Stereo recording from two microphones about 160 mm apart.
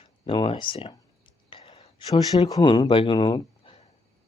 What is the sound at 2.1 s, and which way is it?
Speech, 25° left (ahead or behind).